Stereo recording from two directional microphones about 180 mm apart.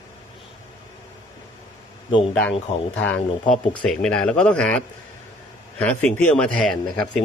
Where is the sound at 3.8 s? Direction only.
5° left (ahead or behind).